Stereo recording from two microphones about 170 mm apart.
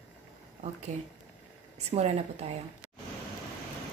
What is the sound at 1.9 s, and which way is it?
Speech, 40° right (ahead or behind).